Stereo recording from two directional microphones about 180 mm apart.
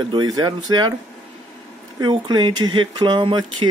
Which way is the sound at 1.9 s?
25° right (ahead or behind).